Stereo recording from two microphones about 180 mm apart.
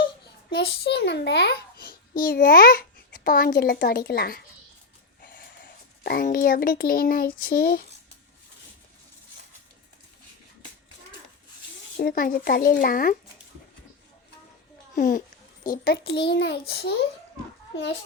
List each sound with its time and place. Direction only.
0.5 s a child's voice: 65° left (ahead or behind)
12.0 s speech: 50° left (ahead or behind)
14.9 s a child's voice: 45° left (ahead or behind); by 16.9 s 65° left (ahead or behind)